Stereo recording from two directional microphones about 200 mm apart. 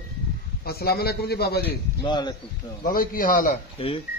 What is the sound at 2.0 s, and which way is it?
Speech, 20° left (ahead or behind).